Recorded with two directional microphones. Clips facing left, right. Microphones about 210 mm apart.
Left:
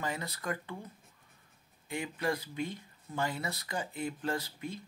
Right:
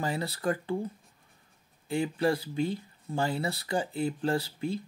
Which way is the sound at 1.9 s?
30° right (ahead or behind).